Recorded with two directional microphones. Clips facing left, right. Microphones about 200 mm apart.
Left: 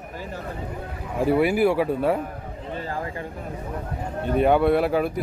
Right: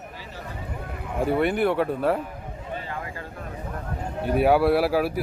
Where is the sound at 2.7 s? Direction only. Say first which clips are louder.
Left 5 dB; 35° left (ahead or behind).